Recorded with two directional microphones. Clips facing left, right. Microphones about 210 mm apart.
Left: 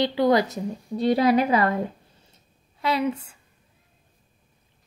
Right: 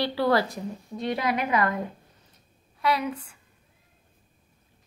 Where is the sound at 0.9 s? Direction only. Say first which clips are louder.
Left 8 dB; 35° left (ahead or behind).